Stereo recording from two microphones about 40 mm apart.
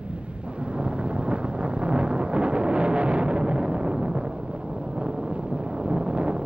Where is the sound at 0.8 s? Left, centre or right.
Right.